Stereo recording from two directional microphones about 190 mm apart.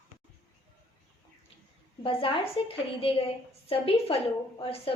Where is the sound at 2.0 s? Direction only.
30° left (ahead or behind).